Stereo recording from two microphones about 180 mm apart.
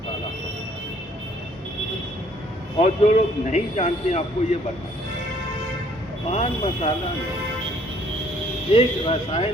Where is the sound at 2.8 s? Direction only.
40° left (ahead or behind).